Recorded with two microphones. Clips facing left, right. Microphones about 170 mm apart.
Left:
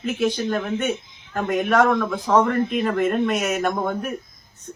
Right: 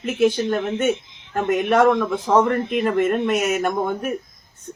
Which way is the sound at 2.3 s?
20° right (ahead or behind).